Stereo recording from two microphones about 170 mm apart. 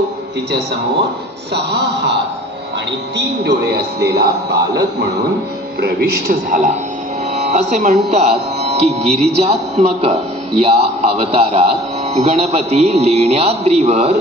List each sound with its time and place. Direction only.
1.5 s speech: 80° right
3.2 s a man's voice: 75° right (ahead or behind)
7.3 s a man's voice: 45° right (ahead or behind)